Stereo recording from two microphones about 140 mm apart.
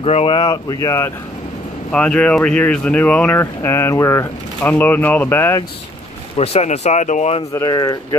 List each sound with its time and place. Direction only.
0.0 s speech: 45° left (ahead or behind); by 1.1 s 20° left (ahead or behind)
1.9 s speech: 5° left (ahead or behind)
6.3 s speech: 45° left (ahead or behind)
7.5 s speech: 25° left (ahead or behind)